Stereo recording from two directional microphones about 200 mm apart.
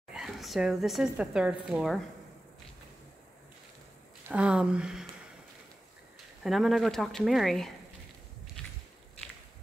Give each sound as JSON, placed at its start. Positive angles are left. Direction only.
{"t": 0.1, "sound": "speech", "side_deg": 0}
{"t": 4.3, "sound": "speech", "side_deg": -5}
{"t": 6.4, "sound": "speech", "side_deg": 0}